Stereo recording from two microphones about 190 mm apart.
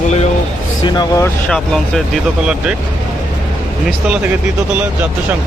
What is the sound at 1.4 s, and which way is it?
Speech, 5° left (ahead or behind).